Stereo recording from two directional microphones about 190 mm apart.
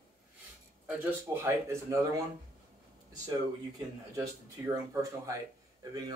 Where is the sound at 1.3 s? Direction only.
15° right (ahead or behind).